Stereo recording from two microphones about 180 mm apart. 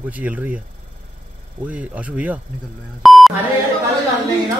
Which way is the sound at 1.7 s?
10° right (ahead or behind).